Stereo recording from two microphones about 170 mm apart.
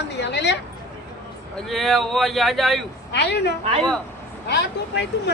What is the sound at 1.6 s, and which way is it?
Speech, centre (ahead or behind).